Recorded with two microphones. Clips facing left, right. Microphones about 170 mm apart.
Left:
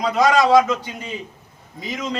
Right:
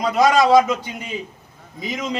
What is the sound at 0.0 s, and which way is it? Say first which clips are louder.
Speech: right 1 dB; 10° right (ahead or behind).